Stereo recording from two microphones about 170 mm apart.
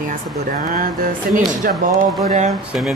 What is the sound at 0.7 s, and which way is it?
Speech, 55° right (ahead or behind).